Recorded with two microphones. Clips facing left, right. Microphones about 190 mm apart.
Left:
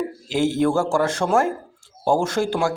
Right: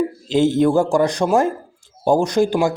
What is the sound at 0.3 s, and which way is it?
Speech, 20° right (ahead or behind).